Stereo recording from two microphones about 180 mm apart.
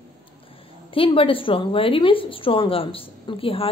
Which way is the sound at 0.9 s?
30° left (ahead or behind).